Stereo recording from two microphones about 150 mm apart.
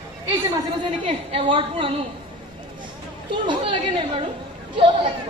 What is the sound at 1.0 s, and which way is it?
Speech, 35° right (ahead or behind).